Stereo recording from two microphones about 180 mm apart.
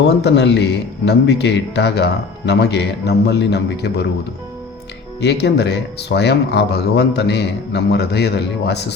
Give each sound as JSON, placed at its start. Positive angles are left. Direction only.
{"t": 0.2, "sound": "a man's voice", "side_deg": 75}
{"t": 5.2, "sound": "a man's voice", "side_deg": 70}